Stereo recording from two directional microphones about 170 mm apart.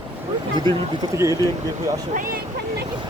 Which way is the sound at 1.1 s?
20° right (ahead or behind).